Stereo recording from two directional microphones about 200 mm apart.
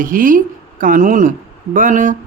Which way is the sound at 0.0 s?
40° right (ahead or behind).